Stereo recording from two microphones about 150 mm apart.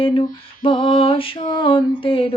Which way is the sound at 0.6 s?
40° left (ahead or behind).